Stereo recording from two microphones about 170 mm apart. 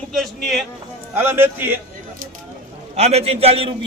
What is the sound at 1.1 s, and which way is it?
Speech, 15° right (ahead or behind).